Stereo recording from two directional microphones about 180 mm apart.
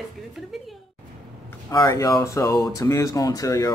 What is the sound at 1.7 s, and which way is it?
Speech, 20° left (ahead or behind).